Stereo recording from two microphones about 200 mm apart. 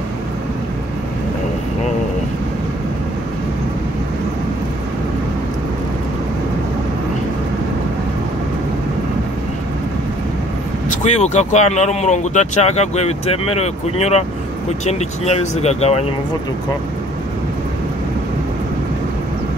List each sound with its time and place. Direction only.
10.9 s speech: 35° left (ahead or behind)